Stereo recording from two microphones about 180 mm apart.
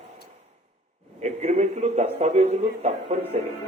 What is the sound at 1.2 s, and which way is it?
Speech, 40° right (ahead or behind).